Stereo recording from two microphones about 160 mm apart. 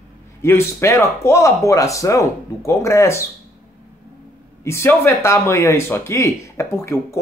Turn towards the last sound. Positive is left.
turn(degrees=20)  # may be behind; listen again after turning